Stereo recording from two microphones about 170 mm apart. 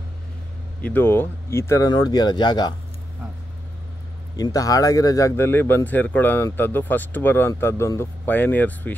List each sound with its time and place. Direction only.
0.8 s speech: 10° left (ahead or behind)
4.4 s speech: 20° left (ahead or behind)